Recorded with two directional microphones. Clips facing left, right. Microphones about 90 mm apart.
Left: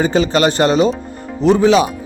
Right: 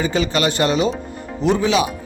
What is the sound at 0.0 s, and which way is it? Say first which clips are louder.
A man's voice: left 5 dB; 35° left (ahead or behind).